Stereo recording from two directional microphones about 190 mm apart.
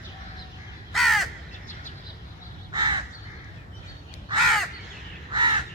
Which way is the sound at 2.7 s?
20° right (ahead or behind).